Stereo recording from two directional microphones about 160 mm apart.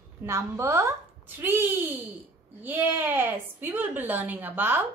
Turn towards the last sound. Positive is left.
turn(degrees=-10)  # may be behind; listen again after turning